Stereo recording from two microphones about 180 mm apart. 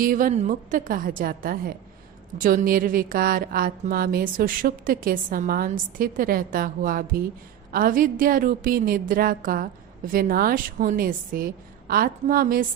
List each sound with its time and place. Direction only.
0.0 s a woman's voice: 50° right (ahead or behind)